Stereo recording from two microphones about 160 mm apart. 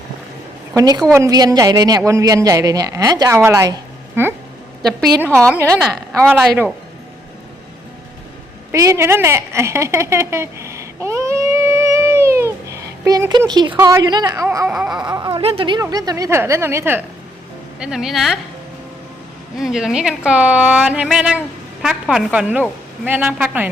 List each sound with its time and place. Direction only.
0.8 s speech: 25° right (ahead or behind)
4.9 s a woman's voice: 5° left (ahead or behind)
5.5 s a woman's voice: 15° right (ahead or behind)
8.7 s a sound: 20° right (ahead or behind)
14.4 s speech: 20° right (ahead or behind)
14.7 s a woman's voice: 5° right (ahead or behind)
15.0 s a woman's voice: 30° right (ahead or behind); by 18.3 s centre (ahead or behind)
19.5 s a woman's voice: centre (ahead or behind)